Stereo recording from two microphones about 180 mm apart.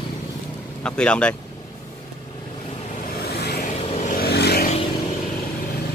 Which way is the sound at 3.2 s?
60° left (ahead or behind).